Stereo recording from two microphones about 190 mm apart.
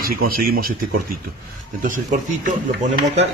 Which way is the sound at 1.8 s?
45° right (ahead or behind).